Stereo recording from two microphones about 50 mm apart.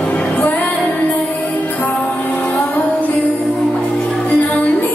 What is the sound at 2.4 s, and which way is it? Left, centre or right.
Music, left.